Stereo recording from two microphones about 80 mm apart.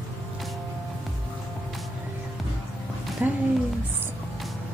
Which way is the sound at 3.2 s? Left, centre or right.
Right.